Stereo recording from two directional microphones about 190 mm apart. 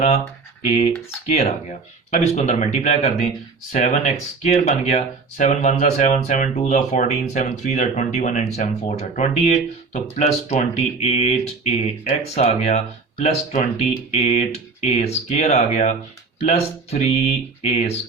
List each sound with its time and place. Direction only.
2.0 s speech: 35° left (ahead or behind)